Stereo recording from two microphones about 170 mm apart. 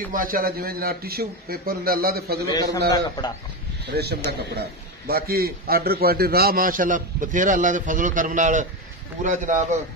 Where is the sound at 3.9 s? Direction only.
70° right (ahead or behind); by 9.6 s 45° right (ahead or behind).